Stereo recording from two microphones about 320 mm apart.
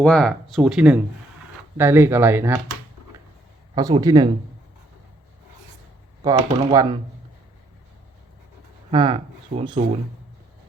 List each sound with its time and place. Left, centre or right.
0.0 s speech: centre
3.8 s speech: centre
6.2 s speech: centre
8.9 s speech: centre